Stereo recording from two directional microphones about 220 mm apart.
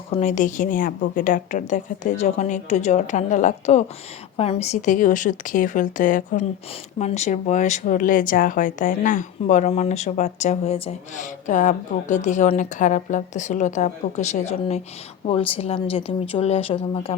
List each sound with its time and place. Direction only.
0.1 s speech: 35° left (ahead or behind)